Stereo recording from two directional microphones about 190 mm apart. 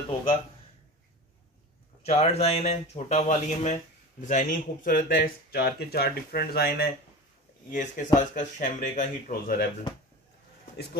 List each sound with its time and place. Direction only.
2.0 s speech: 35° left (ahead or behind); by 6.9 s 55° left (ahead or behind)
7.7 s speech: 40° left (ahead or behind)